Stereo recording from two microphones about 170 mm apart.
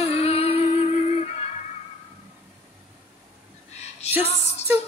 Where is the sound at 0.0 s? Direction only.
35° left (ahead or behind).